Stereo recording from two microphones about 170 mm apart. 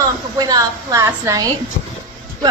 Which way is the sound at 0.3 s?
20° right (ahead or behind).